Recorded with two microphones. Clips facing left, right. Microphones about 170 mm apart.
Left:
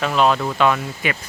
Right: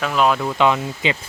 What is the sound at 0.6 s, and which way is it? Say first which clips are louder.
Speech: right 1 dB; 20° right (ahead or behind).